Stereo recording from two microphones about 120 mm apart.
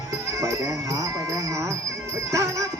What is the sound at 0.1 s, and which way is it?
Livestock, 25° right (ahead or behind).